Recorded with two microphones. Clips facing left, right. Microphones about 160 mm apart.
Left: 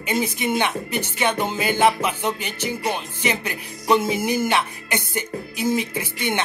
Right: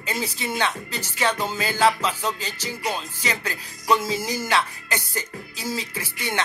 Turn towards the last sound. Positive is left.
turn(degrees=20)  # may be behind; listen again after turning